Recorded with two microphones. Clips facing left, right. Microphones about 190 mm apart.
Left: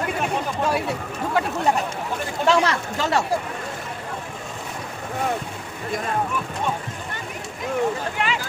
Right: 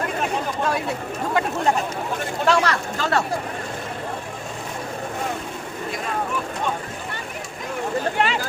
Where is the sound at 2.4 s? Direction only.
25° left (ahead or behind).